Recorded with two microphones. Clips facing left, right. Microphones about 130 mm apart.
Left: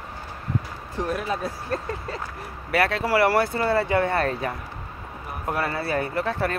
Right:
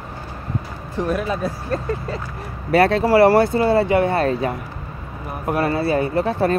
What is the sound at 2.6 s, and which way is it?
Speech, 30° right (ahead or behind).